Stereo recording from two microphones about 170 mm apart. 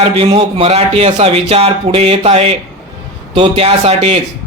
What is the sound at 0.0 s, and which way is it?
A man's voice, 35° right (ahead or behind).